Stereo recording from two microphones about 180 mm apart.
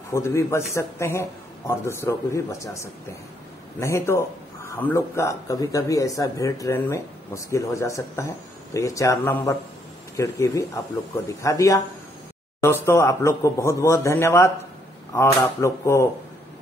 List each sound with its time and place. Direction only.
0.1 s speech: 15° left (ahead or behind)
3.8 s speech: 15° left (ahead or behind)